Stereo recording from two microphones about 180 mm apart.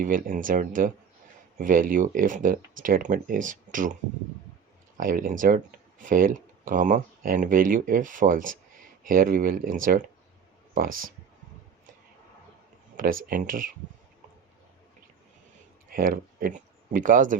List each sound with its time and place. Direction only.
0.0 s speech: 50° right (ahead or behind)
4.9 s speech: 50° right (ahead or behind)
13.0 s speech: 50° right (ahead or behind)
15.9 s speech: 55° right (ahead or behind)